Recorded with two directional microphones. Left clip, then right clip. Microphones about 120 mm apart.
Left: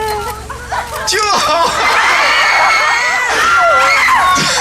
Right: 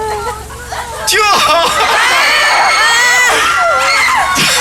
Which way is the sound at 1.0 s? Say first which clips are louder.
Right 4 dB; 20° right (ahead or behind).